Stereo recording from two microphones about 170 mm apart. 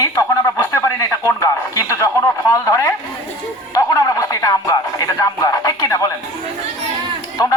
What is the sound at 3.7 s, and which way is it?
Music, 20° left (ahead or behind).